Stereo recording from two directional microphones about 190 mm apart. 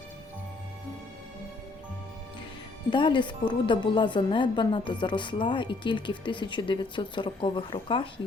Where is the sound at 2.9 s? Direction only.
25° left (ahead or behind).